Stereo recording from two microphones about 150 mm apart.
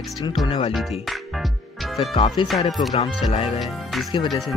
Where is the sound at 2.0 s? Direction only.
35° left (ahead or behind).